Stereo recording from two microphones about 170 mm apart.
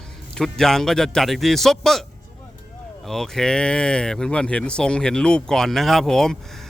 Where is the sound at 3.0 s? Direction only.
Centre (ahead or behind).